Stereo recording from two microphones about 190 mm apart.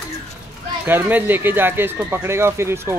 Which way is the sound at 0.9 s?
10° right (ahead or behind).